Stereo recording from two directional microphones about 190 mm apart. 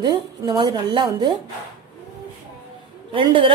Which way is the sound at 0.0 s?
25° right (ahead or behind).